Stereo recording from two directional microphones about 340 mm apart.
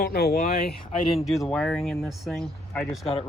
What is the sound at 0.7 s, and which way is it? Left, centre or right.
Speech, centre.